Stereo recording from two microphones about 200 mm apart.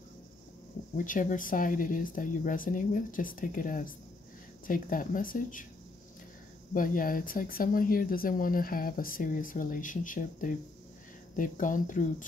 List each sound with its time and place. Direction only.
0.9 s speech: 40° left (ahead or behind)
6.7 s speech: 45° left (ahead or behind)